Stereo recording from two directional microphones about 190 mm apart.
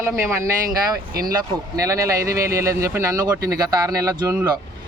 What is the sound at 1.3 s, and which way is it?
Speech, 15° right (ahead or behind).